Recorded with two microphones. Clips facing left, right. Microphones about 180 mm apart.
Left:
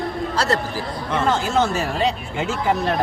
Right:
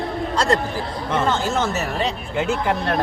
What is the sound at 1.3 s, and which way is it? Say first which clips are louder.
Speech: left 2 dB; 10° left (ahead or behind).